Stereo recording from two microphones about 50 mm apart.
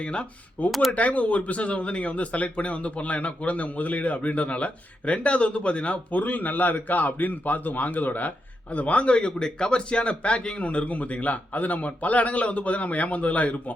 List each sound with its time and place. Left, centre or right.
0.0 s speech: left
0.7 s speech: centre
0.9 s speech: left